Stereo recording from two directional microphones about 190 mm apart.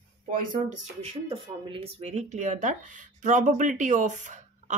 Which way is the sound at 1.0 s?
30° right (ahead or behind).